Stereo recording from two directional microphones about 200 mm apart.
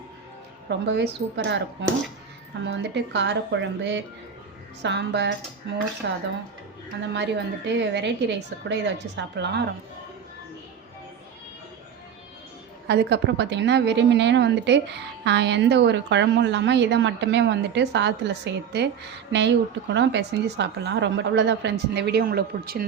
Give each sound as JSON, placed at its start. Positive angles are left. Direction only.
{"t": 0.7, "sound": "a woman's voice", "side_deg": -60}
{"t": 2.6, "sound": "a woman's voice", "side_deg": -60}
{"t": 12.9, "sound": "a woman's voice", "side_deg": -60}